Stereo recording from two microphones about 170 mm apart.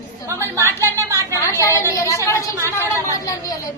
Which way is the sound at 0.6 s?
15° right (ahead or behind).